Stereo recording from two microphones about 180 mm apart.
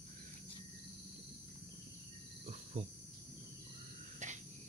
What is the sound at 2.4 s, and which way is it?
Cricket, 40° right (ahead or behind).